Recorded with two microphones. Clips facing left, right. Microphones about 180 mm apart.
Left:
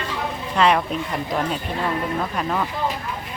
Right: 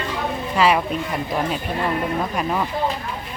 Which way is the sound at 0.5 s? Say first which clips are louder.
Even; 5° right (ahead or behind).